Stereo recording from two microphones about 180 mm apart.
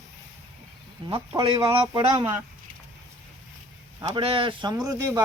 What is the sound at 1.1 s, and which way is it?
Speech, 30° right (ahead or behind).